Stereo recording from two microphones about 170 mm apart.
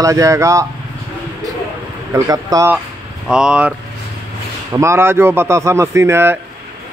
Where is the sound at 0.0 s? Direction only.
20° right (ahead or behind).